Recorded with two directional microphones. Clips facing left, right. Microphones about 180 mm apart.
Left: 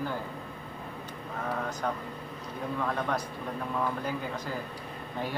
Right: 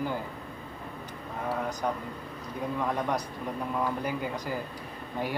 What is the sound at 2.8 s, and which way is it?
Speech, 15° right (ahead or behind).